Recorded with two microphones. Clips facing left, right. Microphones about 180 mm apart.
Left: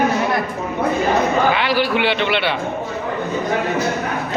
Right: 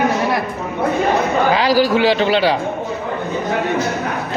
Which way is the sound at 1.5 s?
40° right (ahead or behind).